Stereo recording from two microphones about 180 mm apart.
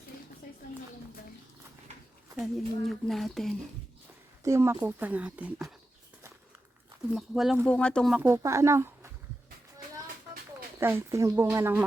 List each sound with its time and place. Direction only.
2.3 s speech: centre (ahead or behind)
4.4 s speech: 15° right (ahead or behind)
7.1 s speech: centre (ahead or behind)
8.1 s speech: 15° right (ahead or behind)
10.8 s speech: 15° right (ahead or behind)